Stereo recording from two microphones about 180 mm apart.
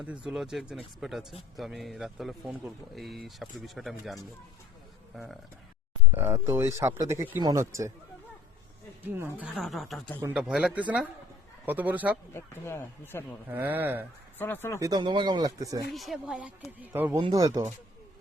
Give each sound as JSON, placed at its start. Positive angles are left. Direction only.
{"t": 0.0, "sound": "a man's voice", "side_deg": -5}
{"t": 6.1, "sound": "speech", "side_deg": -10}
{"t": 9.0, "sound": "a man's voice", "side_deg": -10}
{"t": 12.3, "sound": "speech", "side_deg": 15}
{"t": 13.5, "sound": "speech", "side_deg": -10}
{"t": 14.3, "sound": "speech", "side_deg": 10}
{"t": 14.8, "sound": "speech", "side_deg": -20}
{"t": 15.9, "sound": "a man's voice", "side_deg": 0}
{"t": 17.2, "sound": "speech", "side_deg": -25}